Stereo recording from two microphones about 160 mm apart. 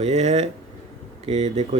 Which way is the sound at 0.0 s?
45° right (ahead or behind).